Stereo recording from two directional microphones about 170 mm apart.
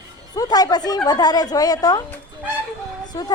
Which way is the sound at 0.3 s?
20° left (ahead or behind).